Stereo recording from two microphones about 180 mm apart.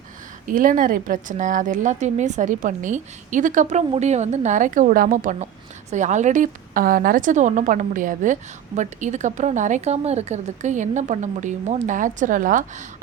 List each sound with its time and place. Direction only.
0.4 s a woman's voice: 50° right (ahead or behind)